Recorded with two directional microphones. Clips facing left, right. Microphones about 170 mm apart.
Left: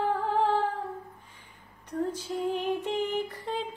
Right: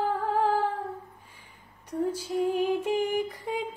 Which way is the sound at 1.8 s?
10° right (ahead or behind).